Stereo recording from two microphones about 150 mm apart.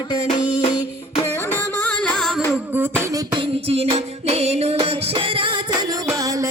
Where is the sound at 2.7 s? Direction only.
15° right (ahead or behind).